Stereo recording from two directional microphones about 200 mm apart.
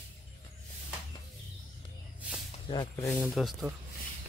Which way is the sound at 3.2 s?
Centre (ahead or behind).